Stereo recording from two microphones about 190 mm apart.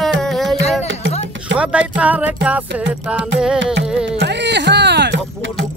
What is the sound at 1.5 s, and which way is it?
Music, 75° right (ahead or behind).